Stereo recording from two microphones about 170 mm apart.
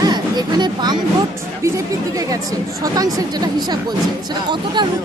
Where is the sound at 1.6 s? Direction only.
20° right (ahead or behind).